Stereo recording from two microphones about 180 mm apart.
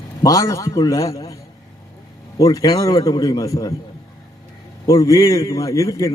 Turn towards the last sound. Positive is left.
turn(degrees=20)  # may be behind; listen again after turning